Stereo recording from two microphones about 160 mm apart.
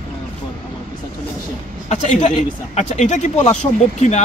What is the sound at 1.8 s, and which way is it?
Speech, 45° left (ahead or behind).